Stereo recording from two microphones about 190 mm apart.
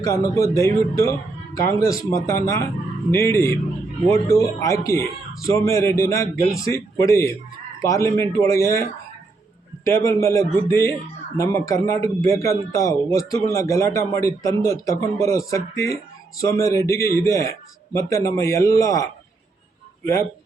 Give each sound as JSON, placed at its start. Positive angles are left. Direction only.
{"t": 0.0, "sound": "a man's voice", "side_deg": 15}